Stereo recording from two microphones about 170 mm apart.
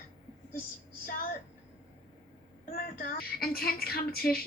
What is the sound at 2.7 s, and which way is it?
Speech, 55° left (ahead or behind).